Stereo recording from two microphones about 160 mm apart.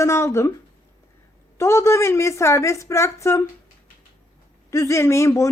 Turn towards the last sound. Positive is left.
turn(degrees=20)  # may be behind; listen again after turning